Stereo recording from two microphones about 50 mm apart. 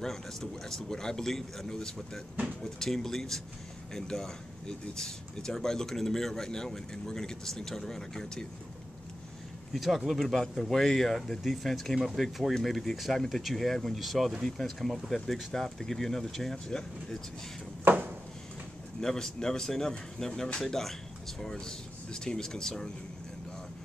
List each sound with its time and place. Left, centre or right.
0.0 s speech: centre
9.8 s speech: centre
17.8 s a sound: right
18.9 s speech: centre